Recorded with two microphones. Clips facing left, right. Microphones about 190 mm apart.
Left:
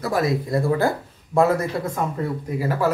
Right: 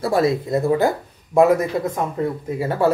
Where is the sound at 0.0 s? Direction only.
25° right (ahead or behind).